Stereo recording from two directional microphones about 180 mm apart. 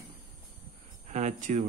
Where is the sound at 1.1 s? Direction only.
40° right (ahead or behind).